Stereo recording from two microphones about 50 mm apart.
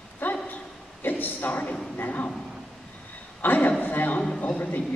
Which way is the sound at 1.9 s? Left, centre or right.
Left.